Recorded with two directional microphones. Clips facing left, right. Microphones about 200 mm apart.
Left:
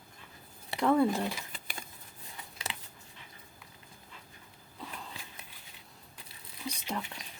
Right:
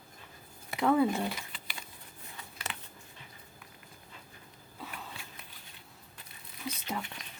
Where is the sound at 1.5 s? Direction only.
45° left (ahead or behind).